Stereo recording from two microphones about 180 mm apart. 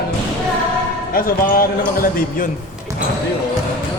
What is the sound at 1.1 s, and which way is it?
A man's voice, 55° left (ahead or behind).